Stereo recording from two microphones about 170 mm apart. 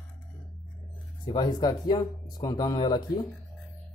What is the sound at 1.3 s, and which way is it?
Speech, 25° left (ahead or behind).